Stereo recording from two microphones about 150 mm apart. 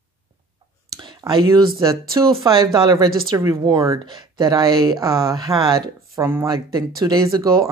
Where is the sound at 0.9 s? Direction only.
30° right (ahead or behind).